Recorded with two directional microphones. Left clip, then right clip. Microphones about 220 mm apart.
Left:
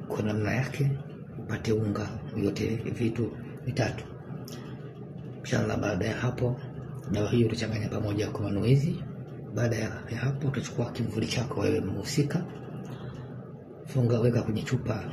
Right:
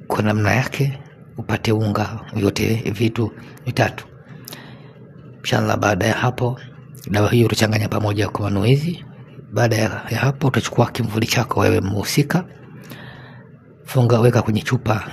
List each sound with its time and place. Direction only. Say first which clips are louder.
0.1 s speech: right 12 dB; 50° right (ahead or behind)
5.4 s speech: right 11 dB; 50° right (ahead or behind)
14.0 s speech: right 11 dB; 50° right (ahead or behind)